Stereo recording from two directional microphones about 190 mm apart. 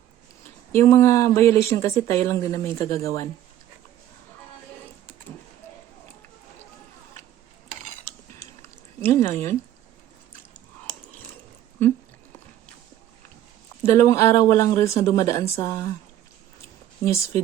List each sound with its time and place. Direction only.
0.7 s speech: 15° left (ahead or behind)
9.0 s speech: 10° left (ahead or behind)
13.8 s speech: 15° left (ahead or behind)
17.0 s speech: 15° left (ahead or behind)